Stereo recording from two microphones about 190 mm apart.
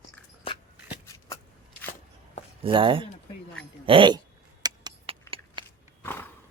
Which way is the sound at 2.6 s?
25° right (ahead or behind).